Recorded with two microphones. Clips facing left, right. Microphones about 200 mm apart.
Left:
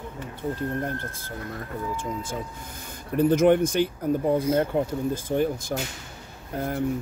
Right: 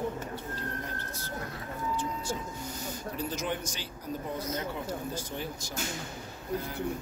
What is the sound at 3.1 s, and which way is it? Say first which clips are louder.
Speech: left 17 dB; 55° left (ahead or behind).